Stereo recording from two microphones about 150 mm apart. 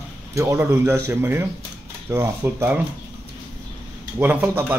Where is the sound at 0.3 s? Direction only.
20° right (ahead or behind).